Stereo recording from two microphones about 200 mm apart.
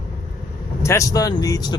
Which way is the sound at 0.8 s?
15° left (ahead or behind).